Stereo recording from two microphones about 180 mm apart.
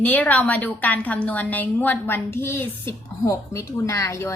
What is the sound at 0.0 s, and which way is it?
A woman's voice, 10° left (ahead or behind).